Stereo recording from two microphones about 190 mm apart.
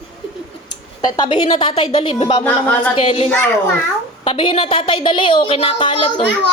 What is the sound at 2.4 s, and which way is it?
Speech, 10° left (ahead or behind).